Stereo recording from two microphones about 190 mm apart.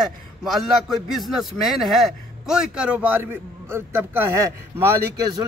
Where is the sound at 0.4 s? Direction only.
Centre (ahead or behind).